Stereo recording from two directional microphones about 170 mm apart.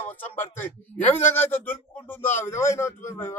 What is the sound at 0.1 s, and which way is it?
A man's voice, 10° left (ahead or behind).